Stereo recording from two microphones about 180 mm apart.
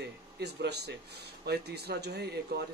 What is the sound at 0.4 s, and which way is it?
Speech, 65° right (ahead or behind).